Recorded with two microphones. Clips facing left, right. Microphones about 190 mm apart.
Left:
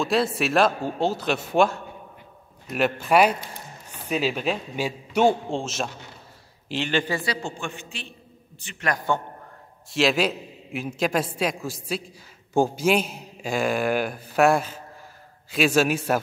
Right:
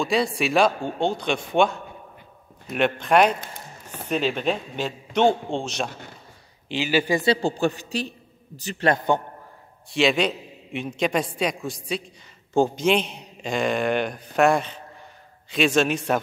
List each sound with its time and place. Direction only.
0.0 s a man's voice: centre (ahead or behind)
7.2 s a man's voice: 30° right (ahead or behind)
9.8 s a man's voice: centre (ahead or behind)